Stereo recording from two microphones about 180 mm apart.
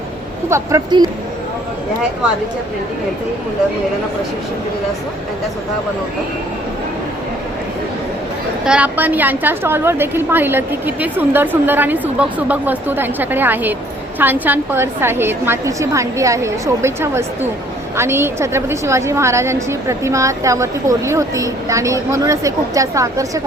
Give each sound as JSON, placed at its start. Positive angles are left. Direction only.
{"t": 0.4, "sound": "a woman's voice", "side_deg": -15}
{"t": 8.6, "sound": "a woman's voice", "side_deg": -5}